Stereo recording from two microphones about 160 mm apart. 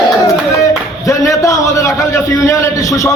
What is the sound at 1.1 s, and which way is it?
A man's voice, 20° left (ahead or behind).